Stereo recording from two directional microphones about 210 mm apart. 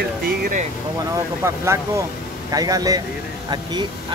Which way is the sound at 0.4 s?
40° right (ahead or behind).